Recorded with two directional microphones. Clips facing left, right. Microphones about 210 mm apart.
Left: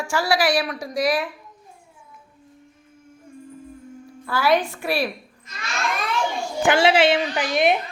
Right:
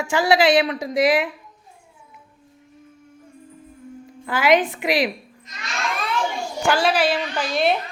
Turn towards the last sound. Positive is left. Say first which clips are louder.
# left 1 dB
turn(degrees=15)  # may be behind; listen again after turning